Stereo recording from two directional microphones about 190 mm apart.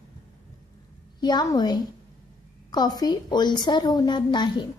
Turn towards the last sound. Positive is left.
turn(degrees=25)  # may be behind; listen again after turning